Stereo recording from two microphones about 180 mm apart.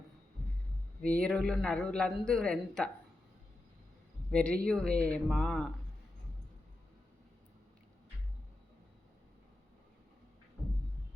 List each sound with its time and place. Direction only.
1.0 s a man's voice: 5° left (ahead or behind)
4.3 s a man's voice: 5° left (ahead or behind)